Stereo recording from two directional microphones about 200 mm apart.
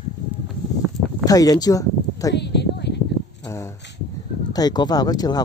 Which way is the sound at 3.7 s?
60° left (ahead or behind).